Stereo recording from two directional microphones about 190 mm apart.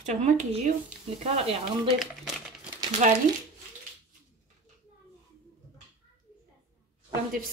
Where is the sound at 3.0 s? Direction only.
40° right (ahead or behind).